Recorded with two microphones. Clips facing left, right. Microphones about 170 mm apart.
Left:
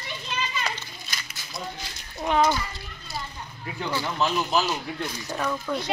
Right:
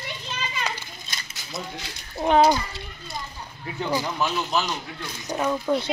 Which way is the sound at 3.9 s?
15° right (ahead or behind).